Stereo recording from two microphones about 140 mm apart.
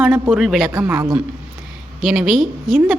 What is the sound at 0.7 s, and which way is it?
Speech, 20° right (ahead or behind).